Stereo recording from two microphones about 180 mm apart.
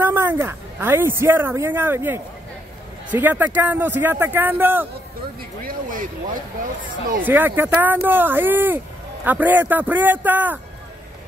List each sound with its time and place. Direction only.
0.0 s a woman's voice: 10° right (ahead or behind)
5.6 s speech: 50° right (ahead or behind)
7.2 s speech: 10° right (ahead or behind)